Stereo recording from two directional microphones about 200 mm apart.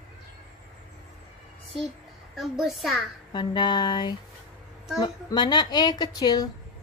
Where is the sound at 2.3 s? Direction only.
Centre (ahead or behind).